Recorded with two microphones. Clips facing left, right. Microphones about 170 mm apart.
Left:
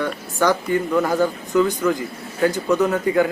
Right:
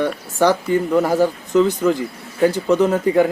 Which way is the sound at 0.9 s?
5° right (ahead or behind).